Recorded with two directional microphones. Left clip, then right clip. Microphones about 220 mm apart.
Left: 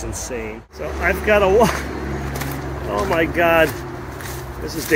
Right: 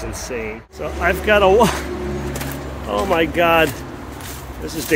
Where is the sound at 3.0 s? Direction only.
10° right (ahead or behind).